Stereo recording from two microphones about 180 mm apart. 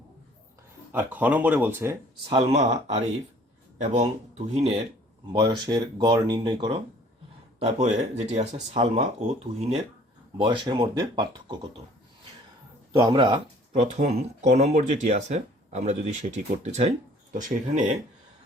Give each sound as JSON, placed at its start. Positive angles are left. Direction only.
{"t": 0.9, "sound": "speech", "side_deg": -10}
{"t": 2.3, "sound": "speech", "side_deg": -35}
{"t": 5.3, "sound": "speech", "side_deg": -25}
{"t": 10.3, "sound": "speech", "side_deg": -25}
{"t": 12.9, "sound": "speech", "side_deg": -20}